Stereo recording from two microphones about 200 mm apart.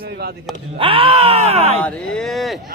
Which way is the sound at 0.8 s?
25° right (ahead or behind).